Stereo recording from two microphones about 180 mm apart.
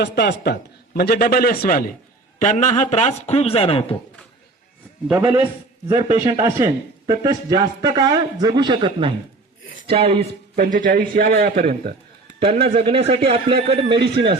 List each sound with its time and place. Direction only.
0.0 s a man's voice: 65° left (ahead or behind); by 3.9 s 30° left (ahead or behind)
5.0 s a man's voice: 10° right (ahead or behind)
5.9 s speech: 35° right (ahead or behind)
7.1 s a man's voice: 25° right (ahead or behind)
10.5 s a man's voice: 45° right (ahead or behind)
13.0 s speech: 35° right (ahead or behind)
13.8 s speech: 70° right (ahead or behind)